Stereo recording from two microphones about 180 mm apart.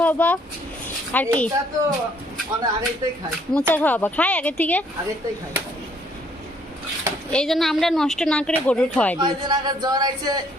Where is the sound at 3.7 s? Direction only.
10° left (ahead or behind).